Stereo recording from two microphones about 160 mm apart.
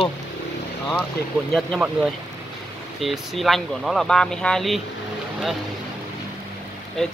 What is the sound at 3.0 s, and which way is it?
Speech, centre (ahead or behind).